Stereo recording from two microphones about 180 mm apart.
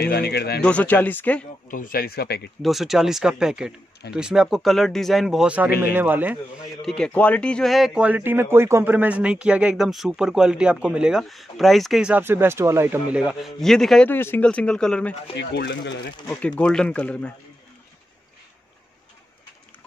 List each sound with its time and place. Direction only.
0.0 s speech: 65° left (ahead or behind)
0.6 s speech: 5° left (ahead or behind)
1.7 s speech: 50° left (ahead or behind)
2.6 s a man's voice: centre (ahead or behind)
6.8 s speech: 5° left (ahead or behind)
15.3 s speech: 75° left (ahead or behind)
16.3 s speech: 5° left (ahead or behind)